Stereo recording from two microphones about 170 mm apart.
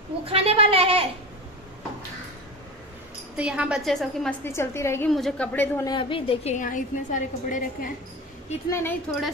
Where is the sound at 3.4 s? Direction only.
5° right (ahead or behind).